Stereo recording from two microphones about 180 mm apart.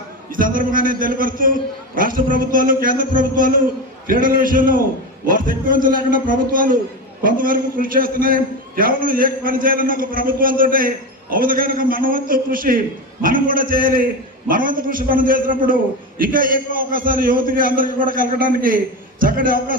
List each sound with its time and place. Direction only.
0.3 s a man's voice: 50° right (ahead or behind)